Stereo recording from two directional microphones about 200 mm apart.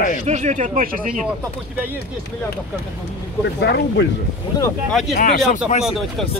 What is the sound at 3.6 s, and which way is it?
Speech, 60° left (ahead or behind).